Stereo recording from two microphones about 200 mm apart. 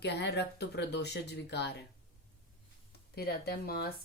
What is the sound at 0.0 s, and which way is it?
Speech, 55° left (ahead or behind).